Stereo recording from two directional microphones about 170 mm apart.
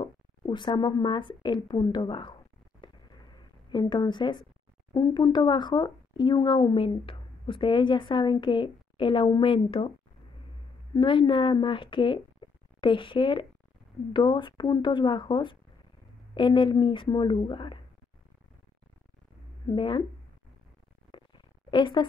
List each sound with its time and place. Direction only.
0.0 s speech: 30° left (ahead or behind)
2.8 s a sound: 25° left (ahead or behind)
4.9 s speech: 25° left (ahead or behind)
19.6 s speech: 30° left (ahead or behind)
21.6 s a woman's voice: 30° left (ahead or behind)